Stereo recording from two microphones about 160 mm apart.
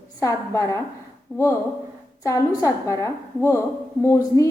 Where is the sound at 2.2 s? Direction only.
20° left (ahead or behind).